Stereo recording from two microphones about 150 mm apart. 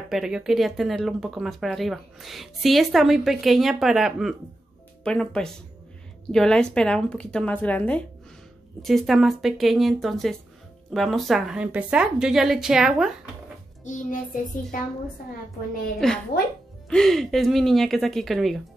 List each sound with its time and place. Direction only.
0.1 s speech: 5° right (ahead or behind)
13.8 s child singing: 60° left (ahead or behind)
16.0 s speech: centre (ahead or behind)